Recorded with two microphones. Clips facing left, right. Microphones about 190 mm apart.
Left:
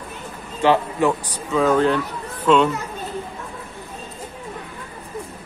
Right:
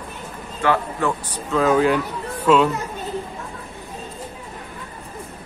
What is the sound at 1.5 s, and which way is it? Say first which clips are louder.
Speech: even; 5° right (ahead or behind).